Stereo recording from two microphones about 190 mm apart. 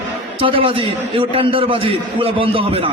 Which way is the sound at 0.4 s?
30° right (ahead or behind).